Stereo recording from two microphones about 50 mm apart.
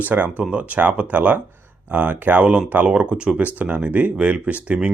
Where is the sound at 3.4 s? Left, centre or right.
Right.